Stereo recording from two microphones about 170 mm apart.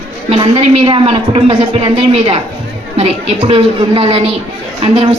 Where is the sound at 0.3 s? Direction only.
30° right (ahead or behind).